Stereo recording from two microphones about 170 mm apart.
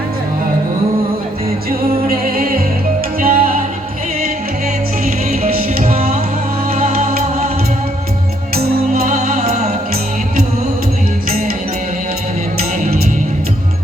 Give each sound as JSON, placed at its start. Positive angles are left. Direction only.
{"t": 2.0, "sound": "music", "side_deg": -60}
{"t": 5.4, "sound": "music", "side_deg": -40}
{"t": 9.0, "sound": "music", "side_deg": -40}